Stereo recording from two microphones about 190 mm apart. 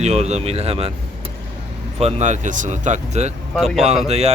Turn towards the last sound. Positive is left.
turn(degrees=-35)  # may be behind; listen again after turning